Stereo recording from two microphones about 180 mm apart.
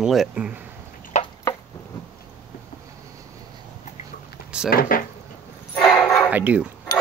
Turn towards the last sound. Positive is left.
turn(degrees=20)  # may be behind; listen again after turning